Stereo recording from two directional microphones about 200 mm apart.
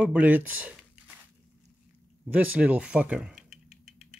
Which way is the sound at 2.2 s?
10° right (ahead or behind).